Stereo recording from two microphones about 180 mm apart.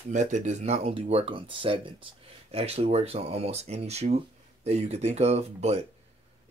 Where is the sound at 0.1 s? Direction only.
40° right (ahead or behind).